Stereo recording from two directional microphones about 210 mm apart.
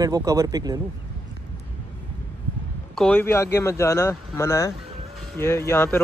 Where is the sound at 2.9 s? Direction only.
5° left (ahead or behind).